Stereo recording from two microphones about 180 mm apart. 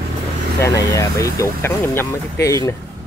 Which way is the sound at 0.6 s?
20° left (ahead or behind).